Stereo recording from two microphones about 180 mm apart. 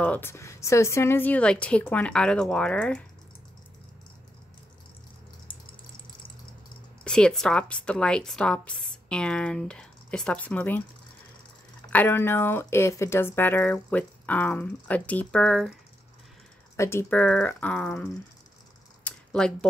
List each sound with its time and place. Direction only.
0.0 s speech: 10° left (ahead or behind)
7.1 s speech: 5° left (ahead or behind)
11.9 s speech: 10° left (ahead or behind)
16.7 s speech: 15° left (ahead or behind)
19.0 s a sound: 5° left (ahead or behind)